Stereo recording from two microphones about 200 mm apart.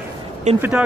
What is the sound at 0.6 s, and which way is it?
Speech, 5° right (ahead or behind).